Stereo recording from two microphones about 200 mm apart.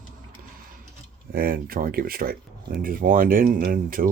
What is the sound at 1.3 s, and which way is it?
Speech, 45° right (ahead or behind).